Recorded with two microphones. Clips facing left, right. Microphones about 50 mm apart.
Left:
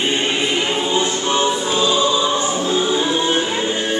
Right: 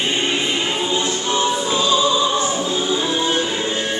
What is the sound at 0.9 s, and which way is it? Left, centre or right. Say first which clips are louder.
Choir: left 2 dB; left.